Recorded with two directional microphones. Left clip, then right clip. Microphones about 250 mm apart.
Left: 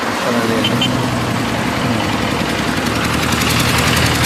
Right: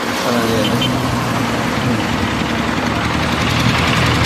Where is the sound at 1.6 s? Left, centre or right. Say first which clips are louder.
Left 1 dB; left.